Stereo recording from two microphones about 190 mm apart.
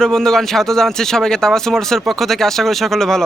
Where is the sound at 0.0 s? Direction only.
Centre (ahead or behind).